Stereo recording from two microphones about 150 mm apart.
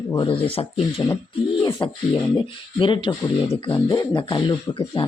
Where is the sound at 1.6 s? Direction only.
30° left (ahead or behind).